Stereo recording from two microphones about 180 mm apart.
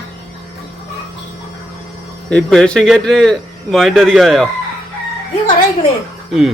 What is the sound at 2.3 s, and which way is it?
Speech, 5° left (ahead or behind).